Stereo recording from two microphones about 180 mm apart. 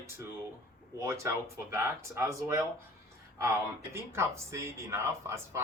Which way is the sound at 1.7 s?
15° right (ahead or behind).